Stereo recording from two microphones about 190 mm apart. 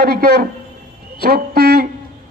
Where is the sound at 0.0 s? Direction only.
50° right (ahead or behind).